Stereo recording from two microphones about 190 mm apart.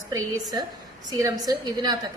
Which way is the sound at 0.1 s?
15° right (ahead or behind).